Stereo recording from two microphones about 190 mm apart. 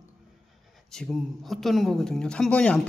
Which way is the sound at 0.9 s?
Centre (ahead or behind).